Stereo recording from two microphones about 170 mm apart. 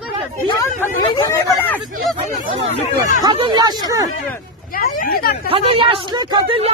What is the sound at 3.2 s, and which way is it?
Speech, 30° right (ahead or behind).